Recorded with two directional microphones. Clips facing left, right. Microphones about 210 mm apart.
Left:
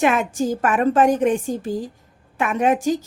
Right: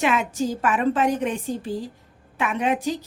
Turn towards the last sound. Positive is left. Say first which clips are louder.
# left 5 dB
turn(degrees=45)  # may be behind; listen again after turning